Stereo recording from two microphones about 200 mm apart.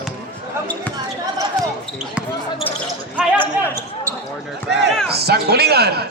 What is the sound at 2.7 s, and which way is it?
Basketball bounce, 10° left (ahead or behind).